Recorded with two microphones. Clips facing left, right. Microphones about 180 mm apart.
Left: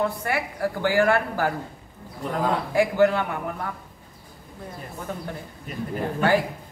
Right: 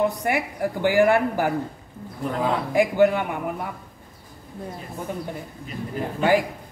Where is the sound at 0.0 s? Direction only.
15° right (ahead or behind).